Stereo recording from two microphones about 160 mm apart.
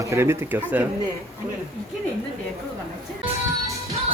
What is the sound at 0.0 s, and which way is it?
Speech, 20° right (ahead or behind).